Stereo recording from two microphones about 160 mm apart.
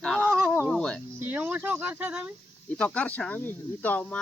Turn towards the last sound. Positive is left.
turn(degrees=10)  # may be behind; listen again after turning